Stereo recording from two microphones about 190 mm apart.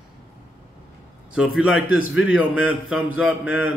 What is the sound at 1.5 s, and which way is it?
Speech, 5° right (ahead or behind).